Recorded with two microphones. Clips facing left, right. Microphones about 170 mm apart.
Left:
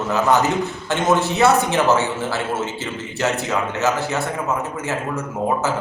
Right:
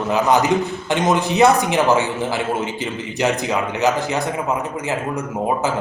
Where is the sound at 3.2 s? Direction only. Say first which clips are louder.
Right 2 dB; 15° right (ahead or behind).